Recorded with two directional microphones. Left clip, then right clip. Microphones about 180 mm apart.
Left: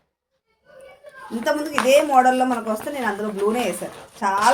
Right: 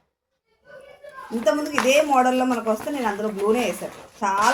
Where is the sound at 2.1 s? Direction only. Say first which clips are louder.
Left 3 dB; 30° left (ahead or behind).